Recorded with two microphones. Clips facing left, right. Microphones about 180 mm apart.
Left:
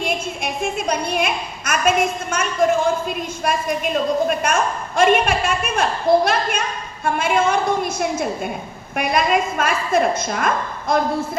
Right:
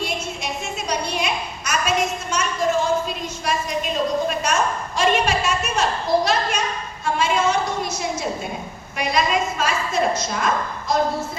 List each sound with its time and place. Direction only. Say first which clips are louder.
0.0 s a woman's voice: left 3 dB; 55° left (ahead or behind)